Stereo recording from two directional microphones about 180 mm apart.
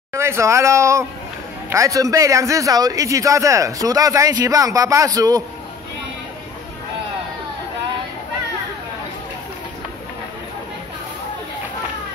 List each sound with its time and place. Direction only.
0.1 s speech: 15° right (ahead or behind)